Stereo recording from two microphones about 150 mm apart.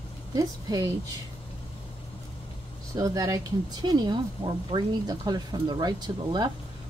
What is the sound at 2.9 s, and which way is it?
Speech, 20° right (ahead or behind).